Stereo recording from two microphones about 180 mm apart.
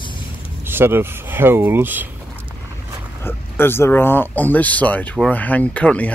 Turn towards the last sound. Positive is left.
turn(degrees=5)  # may be behind; listen again after turning